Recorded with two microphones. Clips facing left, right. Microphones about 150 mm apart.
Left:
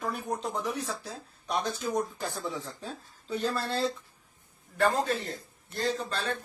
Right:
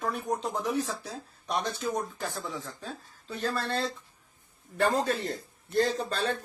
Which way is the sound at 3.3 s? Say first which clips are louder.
Left 1 dB; 10° left (ahead or behind).